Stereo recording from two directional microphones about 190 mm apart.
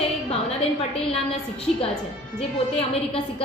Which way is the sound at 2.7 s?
30° left (ahead or behind).